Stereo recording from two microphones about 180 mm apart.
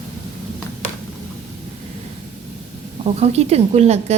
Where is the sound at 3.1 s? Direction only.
35° right (ahead or behind).